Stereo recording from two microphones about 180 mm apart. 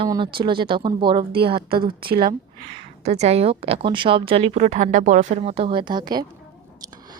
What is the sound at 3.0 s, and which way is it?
A woman's voice, 35° right (ahead or behind).